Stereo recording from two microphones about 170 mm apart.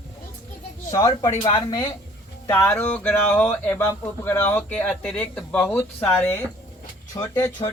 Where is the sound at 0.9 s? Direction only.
20° left (ahead or behind).